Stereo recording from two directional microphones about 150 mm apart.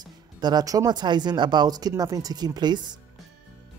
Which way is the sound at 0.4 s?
25° right (ahead or behind).